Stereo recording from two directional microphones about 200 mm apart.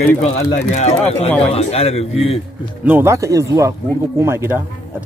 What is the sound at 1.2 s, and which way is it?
Speech, 5° left (ahead or behind).